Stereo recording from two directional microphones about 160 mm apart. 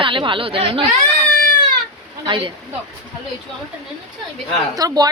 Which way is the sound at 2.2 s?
35° right (ahead or behind).